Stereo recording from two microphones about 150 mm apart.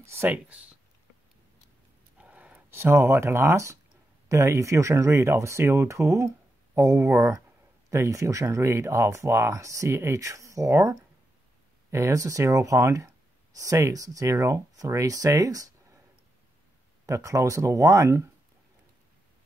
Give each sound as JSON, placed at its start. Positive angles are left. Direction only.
{"t": 0.0, "sound": "speech", "side_deg": -15}
{"t": 2.1, "sound": "speech", "side_deg": -10}
{"t": 17.0, "sound": "speech", "side_deg": -20}